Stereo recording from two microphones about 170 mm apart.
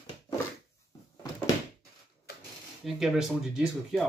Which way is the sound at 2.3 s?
65° left (ahead or behind).